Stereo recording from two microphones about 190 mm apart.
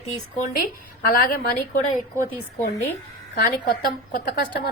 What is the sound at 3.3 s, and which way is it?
A woman's voice, 50° left (ahead or behind).